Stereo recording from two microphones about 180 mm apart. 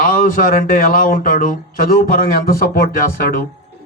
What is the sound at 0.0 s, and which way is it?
A man's voice, 50° left (ahead or behind).